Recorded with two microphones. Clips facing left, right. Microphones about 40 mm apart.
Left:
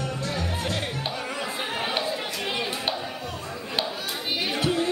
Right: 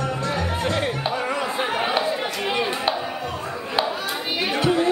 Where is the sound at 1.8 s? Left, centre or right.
Right.